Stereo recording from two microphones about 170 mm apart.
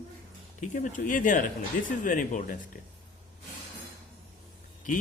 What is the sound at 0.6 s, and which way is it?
Speech, 50° left (ahead or behind).